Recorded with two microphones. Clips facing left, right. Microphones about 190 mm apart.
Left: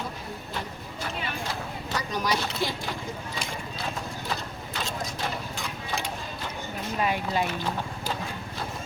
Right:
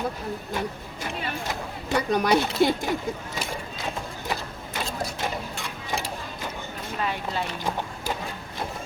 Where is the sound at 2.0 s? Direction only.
60° right (ahead or behind).